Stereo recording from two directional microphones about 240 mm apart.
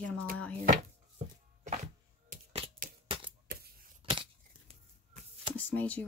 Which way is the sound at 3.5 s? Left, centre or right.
Right.